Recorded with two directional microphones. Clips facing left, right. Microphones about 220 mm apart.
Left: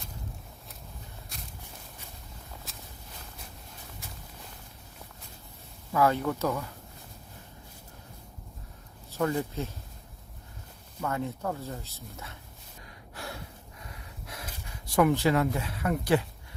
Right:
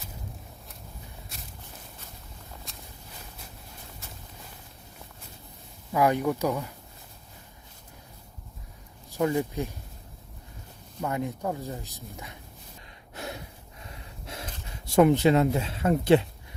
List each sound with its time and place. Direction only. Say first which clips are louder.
2.7 s walk: even; centre (ahead or behind)
5.9 s speech: right 2 dB; 15° right (ahead or behind)
9.0 s speech: right 3 dB; 15° right (ahead or behind)
11.0 s speech: right 2 dB; 15° right (ahead or behind)
13.1 s gasp: right 3 dB; 20° right (ahead or behind)
13.8 s snort: right 3 dB; 25° right (ahead or behind)
14.8 s speech: right 4 dB; 25° right (ahead or behind)